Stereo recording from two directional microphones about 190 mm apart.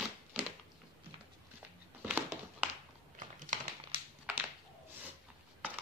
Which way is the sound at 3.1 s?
40° right (ahead or behind).